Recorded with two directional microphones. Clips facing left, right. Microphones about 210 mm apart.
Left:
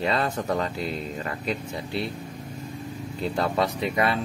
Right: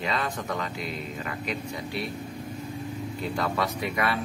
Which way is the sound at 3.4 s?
30° left (ahead or behind).